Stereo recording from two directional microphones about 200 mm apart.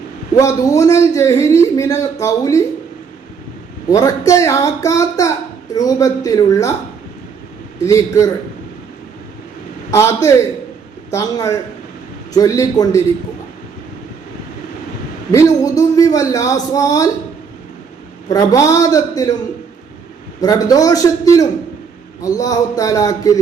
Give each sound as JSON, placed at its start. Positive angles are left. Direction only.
{"t": 0.3, "sound": "a man's voice", "side_deg": 15}
{"t": 3.8, "sound": "a man's voice", "side_deg": 15}
{"t": 7.8, "sound": "a man's voice", "side_deg": 15}
{"t": 9.9, "sound": "a man's voice", "side_deg": 15}
{"t": 15.3, "sound": "a man's voice", "side_deg": 15}
{"t": 18.3, "sound": "a man's voice", "side_deg": 15}
{"t": 20.4, "sound": "a man's voice", "side_deg": 20}